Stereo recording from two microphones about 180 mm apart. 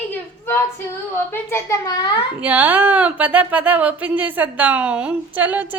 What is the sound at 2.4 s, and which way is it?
Speech, 10° right (ahead or behind).